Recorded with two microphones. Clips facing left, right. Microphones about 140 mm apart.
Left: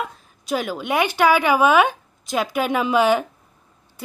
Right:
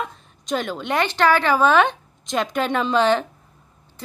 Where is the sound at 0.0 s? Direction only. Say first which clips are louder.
Left 1 dB; 5° left (ahead or behind).